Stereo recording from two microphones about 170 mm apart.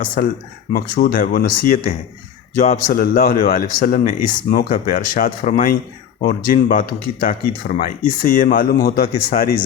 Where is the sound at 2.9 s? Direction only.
60° left (ahead or behind).